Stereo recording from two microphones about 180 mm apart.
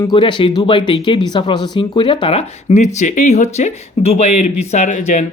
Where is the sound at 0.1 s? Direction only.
25° left (ahead or behind).